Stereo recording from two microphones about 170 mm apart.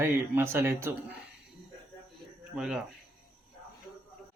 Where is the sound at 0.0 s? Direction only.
15° right (ahead or behind).